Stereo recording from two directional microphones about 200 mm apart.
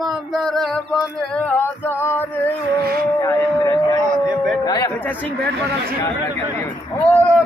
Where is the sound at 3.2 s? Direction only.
15° left (ahead or behind).